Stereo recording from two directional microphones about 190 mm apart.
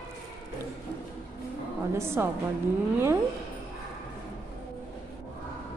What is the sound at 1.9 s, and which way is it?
Speech, 15° right (ahead or behind).